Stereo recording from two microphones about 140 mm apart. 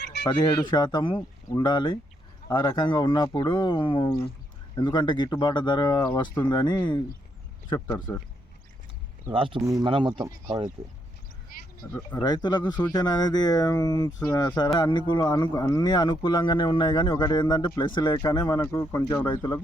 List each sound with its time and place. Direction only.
0.3 s speech: 35° left (ahead or behind)
9.3 s speech: 40° right (ahead or behind)
9.6 s speech: 20° right (ahead or behind)
9.8 s speech: 35° right (ahead or behind)
11.8 s speech: 25° left (ahead or behind)